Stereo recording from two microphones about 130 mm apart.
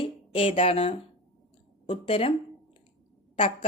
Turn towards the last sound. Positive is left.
turn(degrees=45)  # may be behind; listen again after turning